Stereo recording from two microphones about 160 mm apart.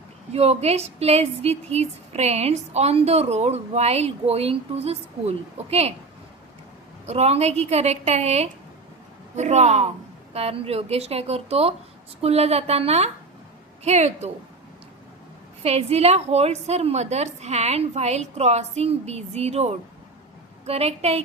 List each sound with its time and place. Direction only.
0.3 s a woman's voice: 40° right (ahead or behind)
7.0 s a woman's voice: 45° right (ahead or behind)
15.6 s a woman's voice: 40° right (ahead or behind)